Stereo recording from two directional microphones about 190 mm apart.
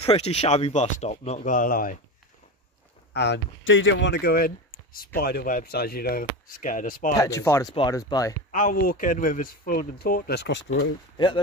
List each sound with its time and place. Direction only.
0.0 s speech: 35° left (ahead or behind)
3.1 s speech: 65° left (ahead or behind); by 7.2 s 45° left (ahead or behind)
7.2 s speech: 15° left (ahead or behind)
8.5 s speech: 45° left (ahead or behind); by 10.9 s 70° left (ahead or behind)
11.1 s speech: 25° left (ahead or behind)